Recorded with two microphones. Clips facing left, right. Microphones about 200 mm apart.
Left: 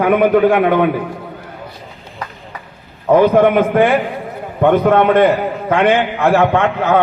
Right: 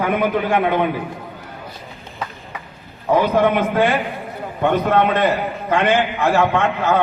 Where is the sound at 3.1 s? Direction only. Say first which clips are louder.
Left 6 dB; 55° left (ahead or behind).